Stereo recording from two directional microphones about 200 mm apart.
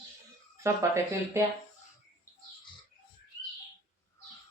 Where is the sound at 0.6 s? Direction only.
15° right (ahead or behind).